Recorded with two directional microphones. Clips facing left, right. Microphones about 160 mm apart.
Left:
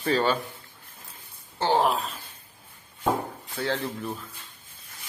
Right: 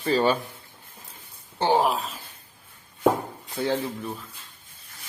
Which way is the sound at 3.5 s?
15° right (ahead or behind).